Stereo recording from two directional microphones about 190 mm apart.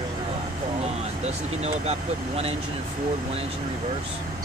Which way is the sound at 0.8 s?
35° right (ahead or behind).